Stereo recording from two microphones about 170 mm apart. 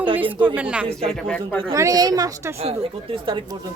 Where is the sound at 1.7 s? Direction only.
20° right (ahead or behind).